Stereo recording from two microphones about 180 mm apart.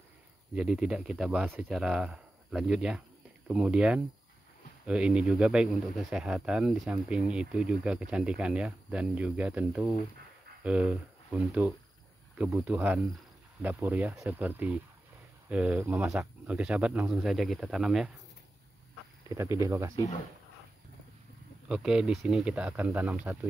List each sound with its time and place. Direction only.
0.6 s speech: 5° right (ahead or behind)
19.2 s speech: 15° right (ahead or behind)
21.6 s speech: 5° right (ahead or behind)